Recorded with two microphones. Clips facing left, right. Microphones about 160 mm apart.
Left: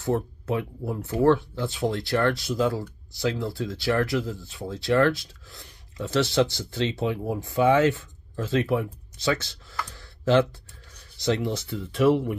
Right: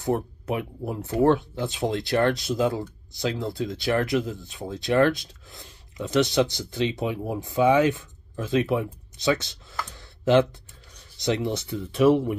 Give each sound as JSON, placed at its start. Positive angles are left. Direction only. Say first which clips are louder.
{"t": 0.0, "sound": "speech", "louder": "even", "side_deg": -15}